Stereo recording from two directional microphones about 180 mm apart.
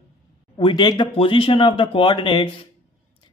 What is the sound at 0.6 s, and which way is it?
Speech, 25° left (ahead or behind).